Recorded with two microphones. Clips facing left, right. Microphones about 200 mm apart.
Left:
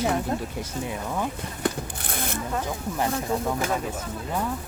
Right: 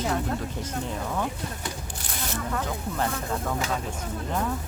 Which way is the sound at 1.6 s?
55° left (ahead or behind).